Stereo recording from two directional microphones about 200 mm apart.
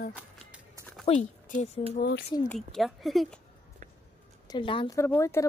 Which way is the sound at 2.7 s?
Centre (ahead or behind).